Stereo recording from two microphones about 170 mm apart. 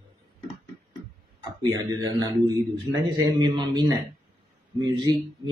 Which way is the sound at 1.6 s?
20° right (ahead or behind).